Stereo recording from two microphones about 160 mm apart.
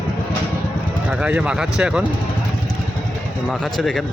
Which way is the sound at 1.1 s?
10° right (ahead or behind).